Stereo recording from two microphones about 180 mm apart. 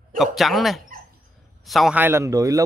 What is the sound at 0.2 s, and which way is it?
A man's voice, centre (ahead or behind).